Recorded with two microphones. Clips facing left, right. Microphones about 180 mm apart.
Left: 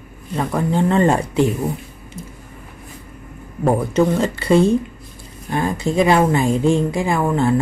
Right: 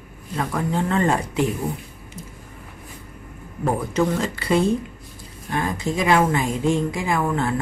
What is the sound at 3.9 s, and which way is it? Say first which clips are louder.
Speech: left 5 dB; 25° left (ahead or behind).